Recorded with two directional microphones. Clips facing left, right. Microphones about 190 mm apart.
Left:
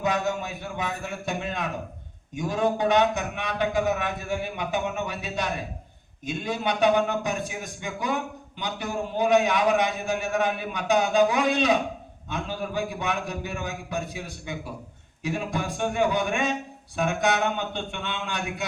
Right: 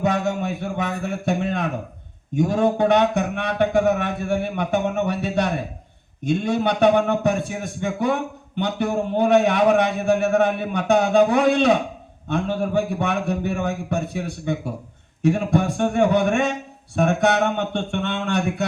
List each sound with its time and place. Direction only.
0.0 s a man's voice: 50° right (ahead or behind)
2.7 s a man's voice: 60° right (ahead or behind)